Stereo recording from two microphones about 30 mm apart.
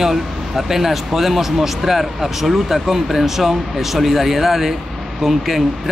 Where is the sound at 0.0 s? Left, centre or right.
Centre.